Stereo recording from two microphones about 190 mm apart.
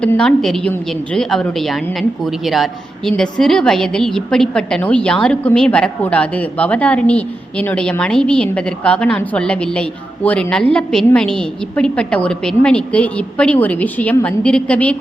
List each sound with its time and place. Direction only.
0.0 s a woman's voice: 5° left (ahead or behind)